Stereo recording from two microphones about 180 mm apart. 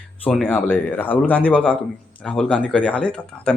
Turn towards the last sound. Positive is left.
turn(degrees=5)  # may be behind; listen again after turning